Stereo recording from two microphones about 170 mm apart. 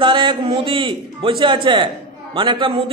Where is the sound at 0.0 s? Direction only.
30° right (ahead or behind).